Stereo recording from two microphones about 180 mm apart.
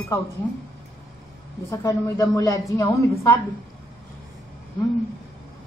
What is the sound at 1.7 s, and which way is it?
A woman's voice, 15° left (ahead or behind).